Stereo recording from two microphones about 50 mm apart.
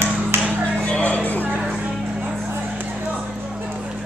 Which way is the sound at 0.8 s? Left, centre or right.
Left.